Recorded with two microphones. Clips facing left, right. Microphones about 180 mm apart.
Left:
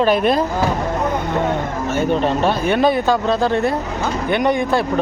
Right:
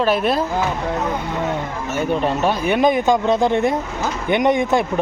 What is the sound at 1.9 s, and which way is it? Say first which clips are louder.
Speech: left 2 dB; 10° right (ahead or behind).